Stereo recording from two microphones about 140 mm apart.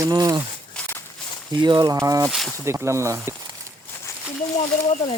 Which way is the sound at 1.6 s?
30° right (ahead or behind).